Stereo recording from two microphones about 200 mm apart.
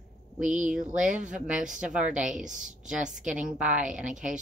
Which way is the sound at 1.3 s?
5° right (ahead or behind).